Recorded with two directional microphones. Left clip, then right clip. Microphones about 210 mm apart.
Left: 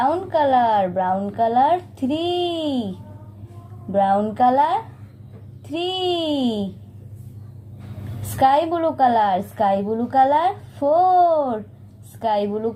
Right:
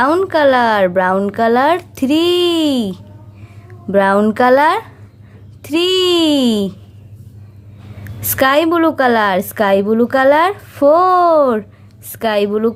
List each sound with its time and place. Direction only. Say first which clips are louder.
0.0 s a woman's voice: right 7 dB; 35° right (ahead or behind)
3.9 s a woman's voice: right 6 dB; 40° right (ahead or behind)
8.4 s a woman's voice: right 5 dB; 40° right (ahead or behind)